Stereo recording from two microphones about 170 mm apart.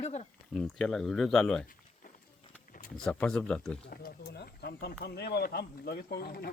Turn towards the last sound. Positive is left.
turn(degrees=65)  # may be behind; listen again after turning